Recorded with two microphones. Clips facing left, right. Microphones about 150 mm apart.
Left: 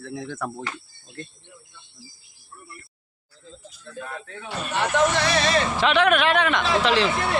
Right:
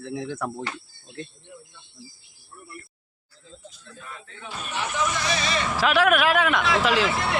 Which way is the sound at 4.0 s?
65° left (ahead or behind).